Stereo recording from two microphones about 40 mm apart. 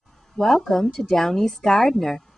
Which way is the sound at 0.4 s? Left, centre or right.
Centre.